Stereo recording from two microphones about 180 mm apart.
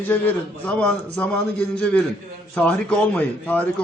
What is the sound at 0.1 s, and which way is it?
A man's voice, 10° left (ahead or behind).